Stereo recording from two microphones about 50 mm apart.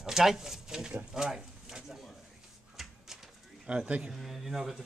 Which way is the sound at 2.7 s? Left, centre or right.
Centre.